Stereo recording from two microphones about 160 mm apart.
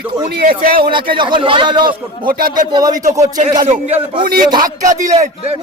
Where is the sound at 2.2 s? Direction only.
60° right (ahead or behind).